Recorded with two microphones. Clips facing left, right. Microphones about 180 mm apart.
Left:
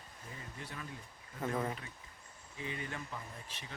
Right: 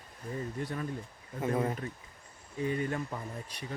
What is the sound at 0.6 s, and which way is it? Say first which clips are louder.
Speech: right 10 dB; 45° right (ahead or behind).